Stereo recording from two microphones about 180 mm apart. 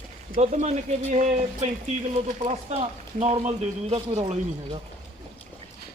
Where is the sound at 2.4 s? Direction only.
35° right (ahead or behind).